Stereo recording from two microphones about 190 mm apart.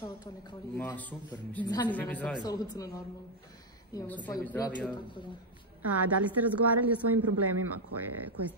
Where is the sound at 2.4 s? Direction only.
20° left (ahead or behind).